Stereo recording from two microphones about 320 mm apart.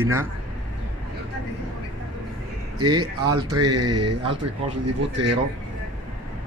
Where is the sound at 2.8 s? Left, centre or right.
Centre.